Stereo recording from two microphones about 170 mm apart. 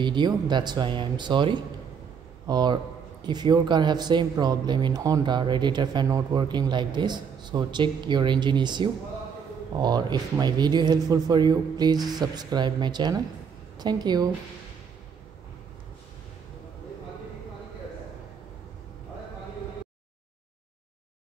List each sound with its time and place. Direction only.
0.0 s speech: 25° right (ahead or behind)